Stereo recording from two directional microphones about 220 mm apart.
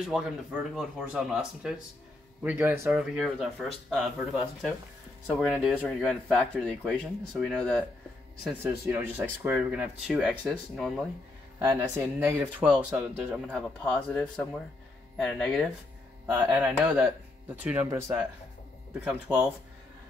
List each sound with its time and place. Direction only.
0.0 s speech: centre (ahead or behind)
8.5 s speech: 10° right (ahead or behind)
11.7 s speech: 10° right (ahead or behind)
13.6 s speech: 5° left (ahead or behind)
16.3 s speech: 10° right (ahead or behind)